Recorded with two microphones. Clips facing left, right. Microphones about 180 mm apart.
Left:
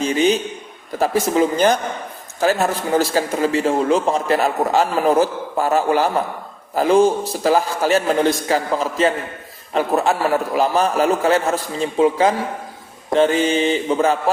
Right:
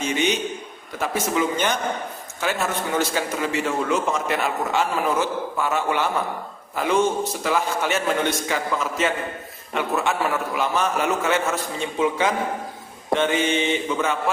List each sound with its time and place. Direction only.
0.0 s a man's voice: 35° left (ahead or behind)